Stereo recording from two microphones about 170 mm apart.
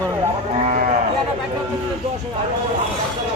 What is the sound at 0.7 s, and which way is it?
Livestock, 45° right (ahead or behind).